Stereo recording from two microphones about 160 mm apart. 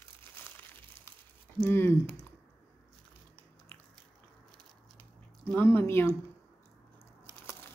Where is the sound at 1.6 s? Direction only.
15° left (ahead or behind).